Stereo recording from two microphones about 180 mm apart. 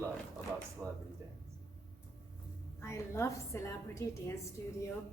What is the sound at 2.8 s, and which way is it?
A woman's voice, 15° left (ahead or behind).